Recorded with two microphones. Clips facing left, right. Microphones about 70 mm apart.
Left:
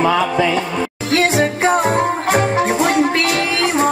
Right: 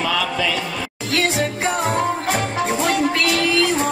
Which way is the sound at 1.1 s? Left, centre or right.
Left.